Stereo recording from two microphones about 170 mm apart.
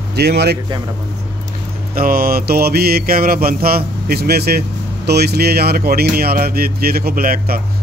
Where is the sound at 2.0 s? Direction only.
60° right (ahead or behind).